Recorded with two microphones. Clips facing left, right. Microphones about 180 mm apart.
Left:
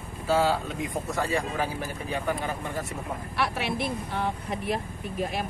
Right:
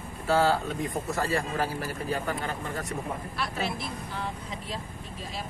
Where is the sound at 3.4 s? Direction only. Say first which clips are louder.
Left 6 dB; 65° left (ahead or behind).